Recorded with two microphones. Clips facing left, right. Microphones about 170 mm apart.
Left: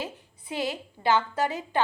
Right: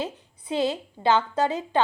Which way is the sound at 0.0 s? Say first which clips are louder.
Right 4 dB; 20° right (ahead or behind).